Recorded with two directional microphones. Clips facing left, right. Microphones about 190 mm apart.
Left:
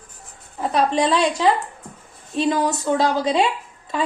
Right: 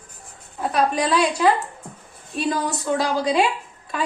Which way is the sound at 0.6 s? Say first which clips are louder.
Left 2 dB; 25° left (ahead or behind).